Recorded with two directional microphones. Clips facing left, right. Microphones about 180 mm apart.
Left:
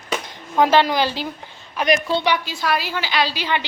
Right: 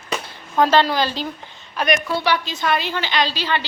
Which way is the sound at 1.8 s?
25° left (ahead or behind).